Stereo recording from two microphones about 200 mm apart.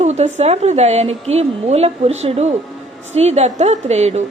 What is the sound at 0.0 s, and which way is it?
A woman's voice, 35° right (ahead or behind).